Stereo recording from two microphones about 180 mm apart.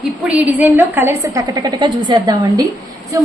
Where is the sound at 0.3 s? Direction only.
10° right (ahead or behind).